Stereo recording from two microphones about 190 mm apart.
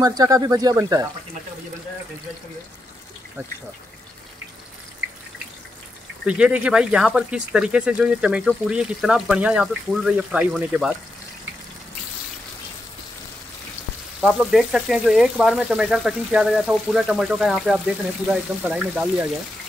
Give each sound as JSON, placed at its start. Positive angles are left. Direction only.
{"t": 0.0, "sound": "speech", "side_deg": -20}
{"t": 6.2, "sound": "speech", "side_deg": -5}
{"t": 14.2, "sound": "speech", "side_deg": 0}